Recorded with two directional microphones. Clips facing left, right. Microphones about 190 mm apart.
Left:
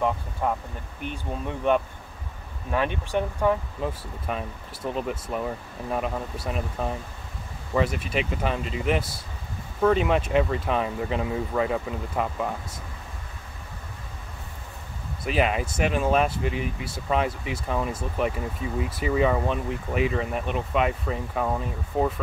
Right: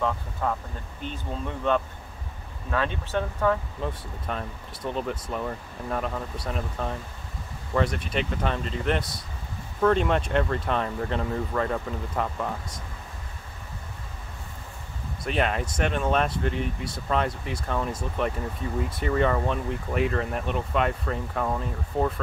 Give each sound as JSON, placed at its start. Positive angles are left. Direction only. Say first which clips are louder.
{"t": 0.4, "sound": "speech", "louder": "left 2 dB", "side_deg": 15}
{"t": 15.2, "sound": "speech", "louder": "left 2 dB", "side_deg": 5}